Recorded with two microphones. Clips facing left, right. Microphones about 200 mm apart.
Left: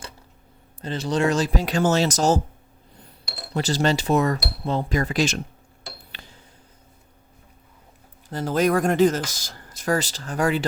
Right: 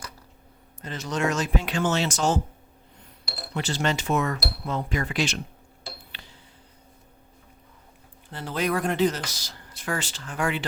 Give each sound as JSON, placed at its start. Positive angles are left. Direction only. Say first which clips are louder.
{"t": 0.8, "sound": "speech", "louder": "left 5 dB", "side_deg": 30}
{"t": 3.5, "sound": "speech", "louder": "left 5 dB", "side_deg": 35}
{"t": 6.1, "sound": "a sound", "louder": "left 2 dB", "side_deg": 45}
{"t": 8.3, "sound": "speech", "louder": "left 6 dB", "side_deg": 45}